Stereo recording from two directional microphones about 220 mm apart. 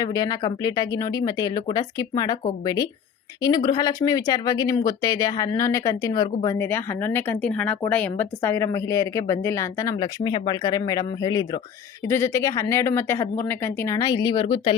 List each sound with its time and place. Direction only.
0.0 s speech: 15° left (ahead or behind)